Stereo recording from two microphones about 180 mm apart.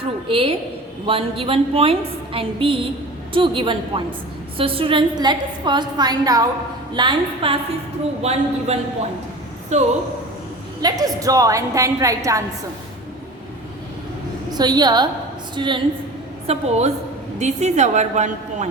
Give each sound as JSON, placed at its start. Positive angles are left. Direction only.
{"t": 0.3, "sound": "a woman's voice", "side_deg": -30}
{"t": 8.2, "sound": "a woman's voice", "side_deg": -35}
{"t": 10.8, "sound": "a woman's voice", "side_deg": -20}
{"t": 14.5, "sound": "a woman's voice", "side_deg": -25}
{"t": 16.5, "sound": "a woman's voice", "side_deg": -35}